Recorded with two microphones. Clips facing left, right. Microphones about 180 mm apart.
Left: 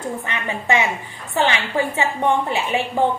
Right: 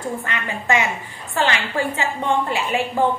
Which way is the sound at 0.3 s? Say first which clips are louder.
Left 1 dB; 20° left (ahead or behind).